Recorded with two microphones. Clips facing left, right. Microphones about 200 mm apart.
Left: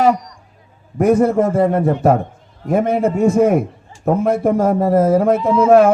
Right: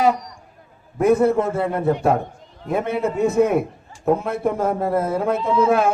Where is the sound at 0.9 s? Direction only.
50° left (ahead or behind).